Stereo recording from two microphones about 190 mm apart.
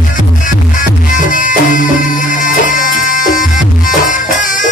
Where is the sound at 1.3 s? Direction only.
45° left (ahead or behind).